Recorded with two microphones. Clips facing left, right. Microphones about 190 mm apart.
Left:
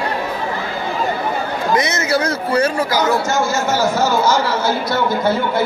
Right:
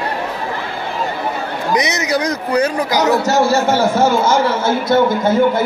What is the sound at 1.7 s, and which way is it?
Speech, 15° right (ahead or behind).